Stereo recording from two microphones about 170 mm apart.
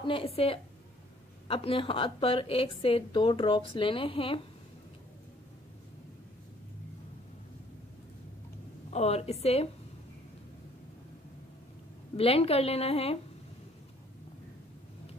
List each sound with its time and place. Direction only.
0.0 s a woman's voice: 30° left (ahead or behind)
8.9 s a woman's voice: 40° left (ahead or behind)
12.2 s a woman's voice: 35° left (ahead or behind)